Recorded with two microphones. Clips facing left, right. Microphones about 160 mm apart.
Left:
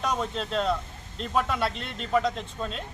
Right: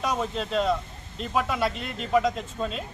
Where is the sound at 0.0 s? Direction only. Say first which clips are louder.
Right 1 dB; 5° right (ahead or behind).